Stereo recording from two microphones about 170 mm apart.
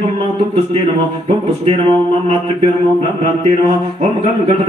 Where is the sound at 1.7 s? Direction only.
35° right (ahead or behind).